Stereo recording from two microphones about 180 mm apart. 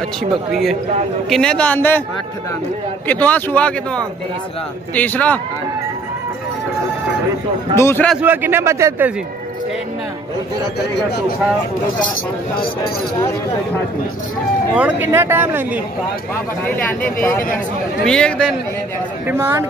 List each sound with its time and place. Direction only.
0.2 s speech: centre (ahead or behind)
3.1 s speech: 10° left (ahead or behind)
7.7 s speech: 15° left (ahead or behind)
8.1 s a man's voice: 10° right (ahead or behind)
10.8 s speech: 65° left (ahead or behind)
14.8 s a man's voice: 10° right (ahead or behind)
16.6 s speech: 10° left (ahead or behind)
19.2 s a man's voice: 15° right (ahead or behind)